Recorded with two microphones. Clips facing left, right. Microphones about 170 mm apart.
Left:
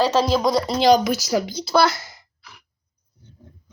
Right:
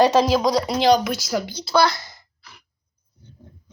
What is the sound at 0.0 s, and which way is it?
Speech, 10° right (ahead or behind).